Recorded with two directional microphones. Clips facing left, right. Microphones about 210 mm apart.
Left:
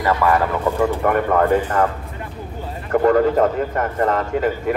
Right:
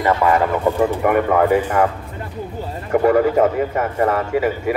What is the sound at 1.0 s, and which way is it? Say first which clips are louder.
Speech: right 2 dB; 10° right (ahead or behind).